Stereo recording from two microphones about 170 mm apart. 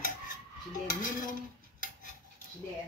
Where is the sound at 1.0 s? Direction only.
55° left (ahead or behind).